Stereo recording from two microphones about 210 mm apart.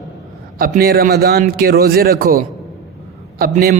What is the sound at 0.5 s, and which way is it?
A man's voice, 45° right (ahead or behind).